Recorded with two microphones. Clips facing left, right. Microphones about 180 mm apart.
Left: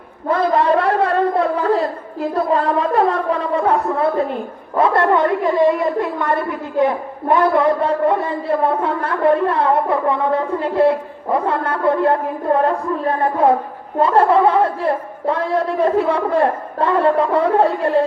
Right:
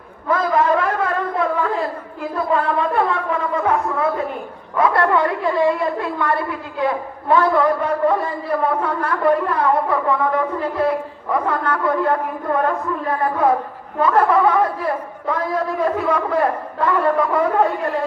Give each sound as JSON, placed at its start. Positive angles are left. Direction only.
{"t": 0.3, "sound": "a sound", "side_deg": 30}
{"t": 2.3, "sound": "speech", "side_deg": 40}
{"t": 4.8, "sound": "a man's voice", "side_deg": 25}